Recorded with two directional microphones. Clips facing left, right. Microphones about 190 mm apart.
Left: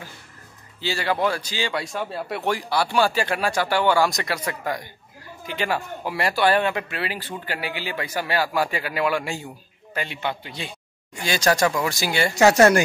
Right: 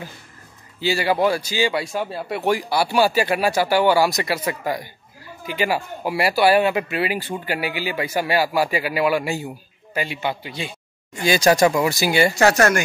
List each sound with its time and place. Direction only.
0.7 s a man's voice: 10° right (ahead or behind)
12.4 s speech: 25° left (ahead or behind)